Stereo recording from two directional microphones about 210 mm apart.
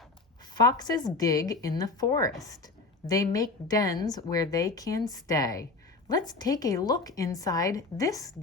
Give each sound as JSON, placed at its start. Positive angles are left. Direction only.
{"t": 0.6, "sound": "a woman's voice", "side_deg": 20}